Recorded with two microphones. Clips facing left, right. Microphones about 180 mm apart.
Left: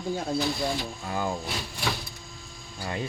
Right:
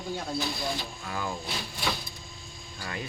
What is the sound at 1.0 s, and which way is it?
Speech, 30° left (ahead or behind).